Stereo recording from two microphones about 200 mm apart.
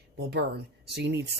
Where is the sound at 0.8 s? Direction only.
55° right (ahead or behind).